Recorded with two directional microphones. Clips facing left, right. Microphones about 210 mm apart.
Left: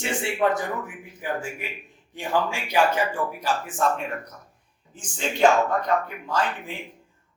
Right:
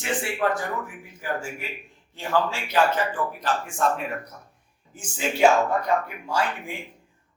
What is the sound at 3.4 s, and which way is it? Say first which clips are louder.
Speech: even; centre (ahead or behind).